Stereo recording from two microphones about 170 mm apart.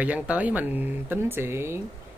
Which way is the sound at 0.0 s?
10° right (ahead or behind).